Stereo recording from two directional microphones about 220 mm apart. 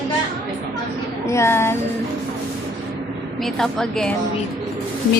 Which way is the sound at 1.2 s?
10° left (ahead or behind).